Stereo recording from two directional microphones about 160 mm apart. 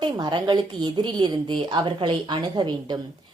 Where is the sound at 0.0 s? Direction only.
25° right (ahead or behind).